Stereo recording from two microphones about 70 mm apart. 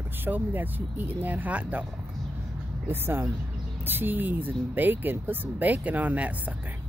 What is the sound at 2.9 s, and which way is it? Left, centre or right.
Speech, right.